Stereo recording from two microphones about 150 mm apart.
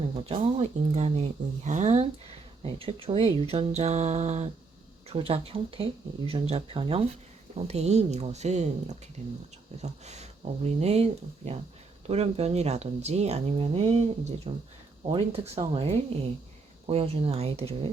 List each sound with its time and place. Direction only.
0.2 s speech: 40° right (ahead or behind)
2.6 s speech: 40° right (ahead or behind)